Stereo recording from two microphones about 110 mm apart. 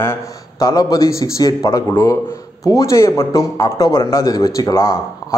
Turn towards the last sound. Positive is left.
turn(degrees=30)  # may be behind; listen again after turning